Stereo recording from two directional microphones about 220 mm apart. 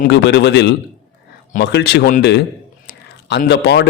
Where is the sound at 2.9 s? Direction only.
50° left (ahead or behind).